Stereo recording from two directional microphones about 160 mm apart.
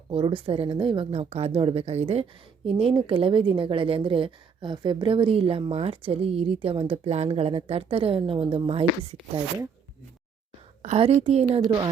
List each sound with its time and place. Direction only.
0.1 s a woman's voice: 35° right (ahead or behind)
10.8 s a woman's voice: 40° right (ahead or behind)
11.4 s speech: 30° right (ahead or behind)